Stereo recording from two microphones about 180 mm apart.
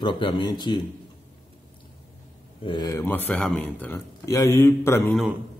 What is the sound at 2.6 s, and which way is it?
A man's voice, 25° left (ahead or behind).